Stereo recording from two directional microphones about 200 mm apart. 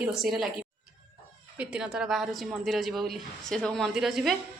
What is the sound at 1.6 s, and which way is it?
A woman's voice, 5° right (ahead or behind).